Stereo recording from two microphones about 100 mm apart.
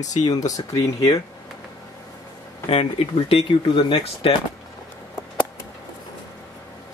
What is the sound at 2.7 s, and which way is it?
Speech, 75° left (ahead or behind).